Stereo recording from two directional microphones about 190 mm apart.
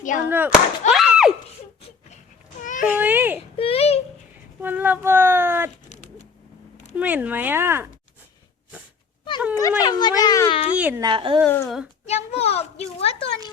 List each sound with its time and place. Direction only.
0.0 s speech: 45° left (ahead or behind)
0.3 s speech: 10° right (ahead or behind)
2.6 s a sound: 45° left (ahead or behind)
2.9 s speech: 10° right (ahead or behind)
3.6 s baby cry: 30° left (ahead or behind)
4.6 s speech: 10° right (ahead or behind)
5.9 s a sound: 35° left (ahead or behind)
6.9 s speech: 10° right (ahead or behind)
9.6 s speech: 20° left (ahead or behind)
10.8 s speech: 10° right (ahead or behind)
11.0 s speech: 25° right (ahead or behind)
11.4 s speech: 10° left (ahead or behind)
12.0 s a child's voice: 35° left (ahead or behind)